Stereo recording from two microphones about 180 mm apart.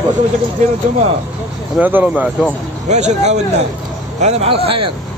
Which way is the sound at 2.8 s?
40° right (ahead or behind).